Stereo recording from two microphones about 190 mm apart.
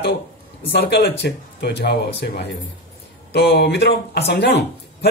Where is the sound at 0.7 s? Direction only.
60° left (ahead or behind).